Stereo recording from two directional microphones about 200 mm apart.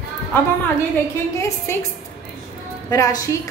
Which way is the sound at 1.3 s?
15° left (ahead or behind).